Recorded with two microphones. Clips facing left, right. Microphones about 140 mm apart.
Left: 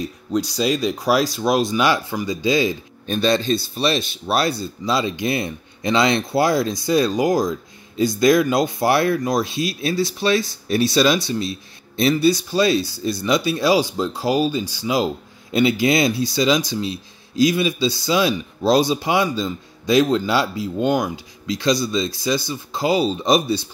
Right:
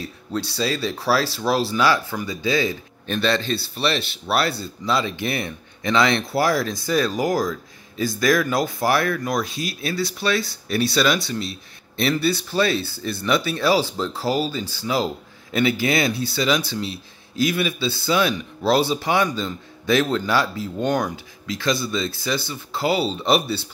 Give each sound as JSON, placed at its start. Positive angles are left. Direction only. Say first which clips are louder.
{"t": 0.0, "sound": "speech", "louder": "left 5 dB", "side_deg": 15}
{"t": 3.9, "sound": "speech", "louder": "left 3 dB", "side_deg": -65}
{"t": 4.3, "sound": "speech", "louder": "left 2 dB", "side_deg": 15}
{"t": 9.5, "sound": "speech", "louder": "left 5 dB", "side_deg": -50}
{"t": 9.8, "sound": "speech", "louder": "left 3 dB", "side_deg": 20}